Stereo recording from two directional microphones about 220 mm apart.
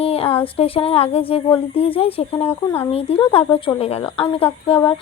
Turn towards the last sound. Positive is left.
turn(degrees=25)  # may be behind; listen again after turning